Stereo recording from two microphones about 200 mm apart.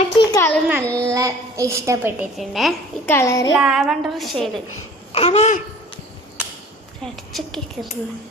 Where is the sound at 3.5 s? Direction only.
Centre (ahead or behind).